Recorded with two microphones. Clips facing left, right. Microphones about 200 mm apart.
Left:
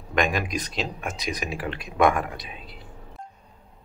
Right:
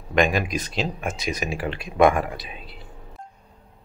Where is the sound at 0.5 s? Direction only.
Centre (ahead or behind).